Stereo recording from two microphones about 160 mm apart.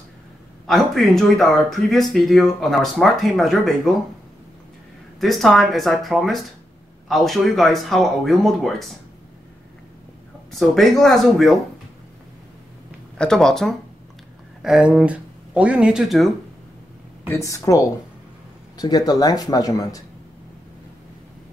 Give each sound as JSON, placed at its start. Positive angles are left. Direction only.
{"t": 0.7, "sound": "speech", "side_deg": 0}
{"t": 5.2, "sound": "speech", "side_deg": 0}
{"t": 10.5, "sound": "speech", "side_deg": 0}
{"t": 13.2, "sound": "speech", "side_deg": 5}
{"t": 17.4, "sound": "speech", "side_deg": 20}